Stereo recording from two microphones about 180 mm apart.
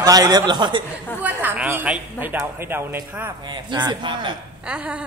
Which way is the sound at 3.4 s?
25° right (ahead or behind).